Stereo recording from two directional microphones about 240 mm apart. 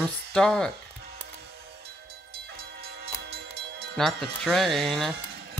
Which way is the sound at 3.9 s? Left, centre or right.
Centre.